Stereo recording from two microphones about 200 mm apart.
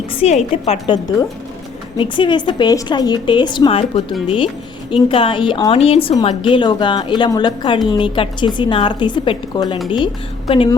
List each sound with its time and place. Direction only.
0.2 s a woman's voice: 30° left (ahead or behind)
2.0 s a woman's voice: 25° left (ahead or behind)
5.0 s a woman's voice: 25° left (ahead or behind)